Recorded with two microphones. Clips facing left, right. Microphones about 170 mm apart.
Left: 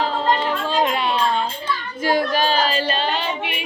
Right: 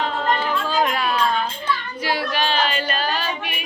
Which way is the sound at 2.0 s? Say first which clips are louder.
Left 4 dB; 45° left (ahead or behind).